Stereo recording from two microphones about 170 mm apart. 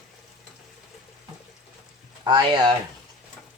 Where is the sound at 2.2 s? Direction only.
25° right (ahead or behind).